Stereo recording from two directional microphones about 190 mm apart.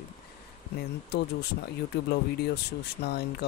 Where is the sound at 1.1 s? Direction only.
60° left (ahead or behind).